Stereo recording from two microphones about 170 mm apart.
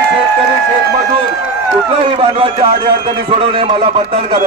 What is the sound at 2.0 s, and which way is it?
Speech, 35° right (ahead or behind).